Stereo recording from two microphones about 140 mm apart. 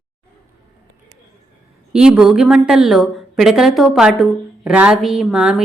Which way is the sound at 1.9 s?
5° right (ahead or behind).